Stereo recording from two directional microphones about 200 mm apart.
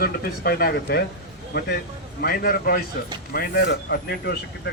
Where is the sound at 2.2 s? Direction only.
50° left (ahead or behind).